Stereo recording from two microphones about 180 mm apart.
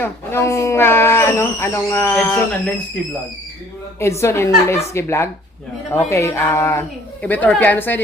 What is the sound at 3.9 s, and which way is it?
A man's voice, 15° left (ahead or behind).